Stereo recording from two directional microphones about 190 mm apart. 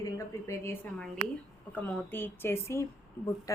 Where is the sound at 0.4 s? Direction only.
15° left (ahead or behind).